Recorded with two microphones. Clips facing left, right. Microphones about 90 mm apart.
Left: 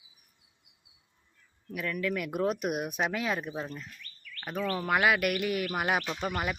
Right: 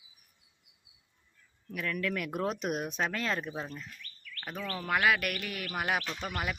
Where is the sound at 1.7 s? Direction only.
5° left (ahead or behind).